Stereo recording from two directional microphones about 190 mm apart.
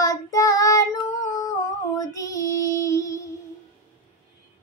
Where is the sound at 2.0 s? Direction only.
15° left (ahead or behind).